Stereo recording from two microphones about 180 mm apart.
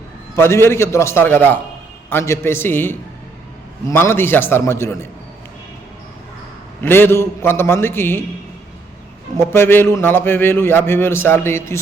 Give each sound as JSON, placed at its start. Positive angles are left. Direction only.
{"t": 0.3, "sound": "a man's voice", "side_deg": 15}
{"t": 6.8, "sound": "a man's voice", "side_deg": 10}
{"t": 9.4, "sound": "a man's voice", "side_deg": 15}